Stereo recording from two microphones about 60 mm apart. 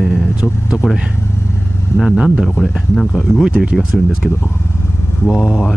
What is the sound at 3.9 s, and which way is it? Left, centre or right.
Speech, centre.